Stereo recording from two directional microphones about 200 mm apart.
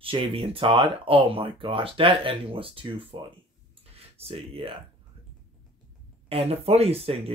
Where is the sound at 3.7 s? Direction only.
30° right (ahead or behind).